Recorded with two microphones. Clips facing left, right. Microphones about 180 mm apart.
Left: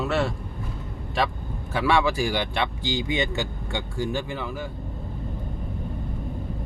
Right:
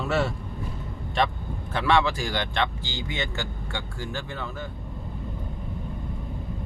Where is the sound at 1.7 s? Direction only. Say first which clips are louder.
Left 1 dB; 10° left (ahead or behind).